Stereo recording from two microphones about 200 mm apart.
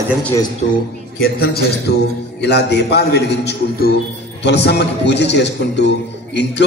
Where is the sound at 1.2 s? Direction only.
50° left (ahead or behind).